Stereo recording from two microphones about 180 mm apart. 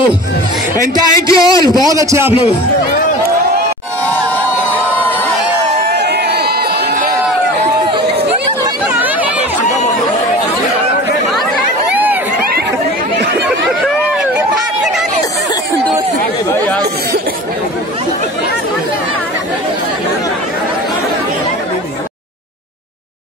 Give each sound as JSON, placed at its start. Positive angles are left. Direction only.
{"t": 0.7, "sound": "speech", "side_deg": 20}
{"t": 1.9, "sound": "a man's voice", "side_deg": -20}
{"t": 5.9, "sound": "crowd", "side_deg": -65}
{"t": 11.9, "sound": "crowd", "side_deg": -10}